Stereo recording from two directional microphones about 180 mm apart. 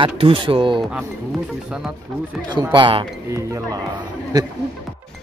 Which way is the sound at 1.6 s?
5° right (ahead or behind).